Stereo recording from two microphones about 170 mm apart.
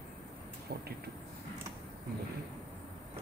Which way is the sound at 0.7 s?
65° right (ahead or behind).